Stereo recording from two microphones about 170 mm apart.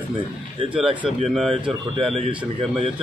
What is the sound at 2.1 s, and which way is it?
Speech, 30° right (ahead or behind).